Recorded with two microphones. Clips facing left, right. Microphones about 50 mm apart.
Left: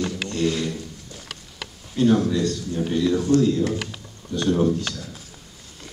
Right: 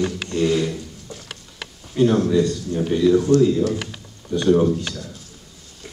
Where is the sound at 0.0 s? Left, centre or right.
Right.